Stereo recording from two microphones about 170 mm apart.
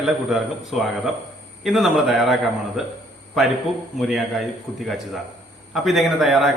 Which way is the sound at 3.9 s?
Centre (ahead or behind).